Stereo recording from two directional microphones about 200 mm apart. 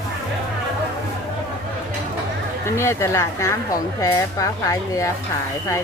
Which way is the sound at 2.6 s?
15° left (ahead or behind).